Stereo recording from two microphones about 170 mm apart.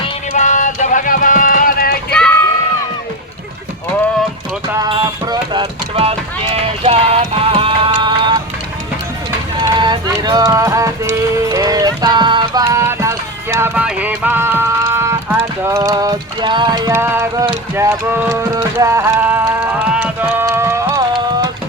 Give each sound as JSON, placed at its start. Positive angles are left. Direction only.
{"t": 0.3, "sound": "a sound", "side_deg": 45}
{"t": 4.9, "sound": "speech", "side_deg": -25}
{"t": 9.7, "sound": "speech", "side_deg": -25}
{"t": 11.1, "sound": "music", "side_deg": -15}
{"t": 16.9, "sound": "speech", "side_deg": -15}
{"t": 17.7, "sound": "music", "side_deg": -15}